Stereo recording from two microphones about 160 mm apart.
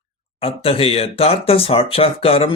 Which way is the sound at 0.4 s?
35° left (ahead or behind).